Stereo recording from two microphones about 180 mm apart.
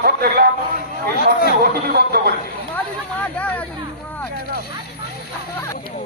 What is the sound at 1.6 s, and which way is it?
Speech, 60° right (ahead or behind).